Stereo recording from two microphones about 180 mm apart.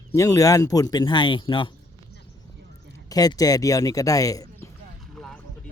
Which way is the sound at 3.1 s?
20° left (ahead or behind).